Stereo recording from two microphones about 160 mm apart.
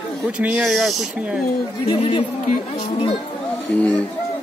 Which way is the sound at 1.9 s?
35° left (ahead or behind).